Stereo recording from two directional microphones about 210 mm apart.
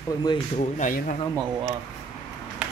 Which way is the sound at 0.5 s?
35° left (ahead or behind).